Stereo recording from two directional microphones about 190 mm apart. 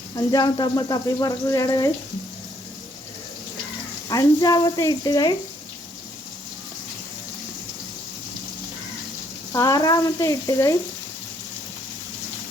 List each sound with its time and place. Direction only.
0.2 s speech: 20° left (ahead or behind)
4.1 s speech: 20° left (ahead or behind)
9.5 s frying: 20° left (ahead or behind)